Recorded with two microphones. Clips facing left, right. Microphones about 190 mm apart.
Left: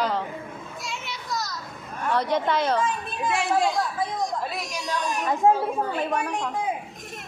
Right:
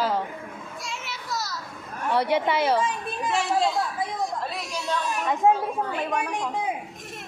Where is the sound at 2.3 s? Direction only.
10° right (ahead or behind).